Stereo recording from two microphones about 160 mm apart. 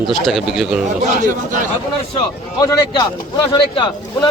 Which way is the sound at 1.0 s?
55° right (ahead or behind).